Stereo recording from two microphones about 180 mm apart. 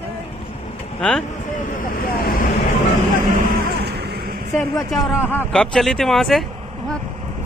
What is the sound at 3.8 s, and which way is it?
Music, 65° right (ahead or behind).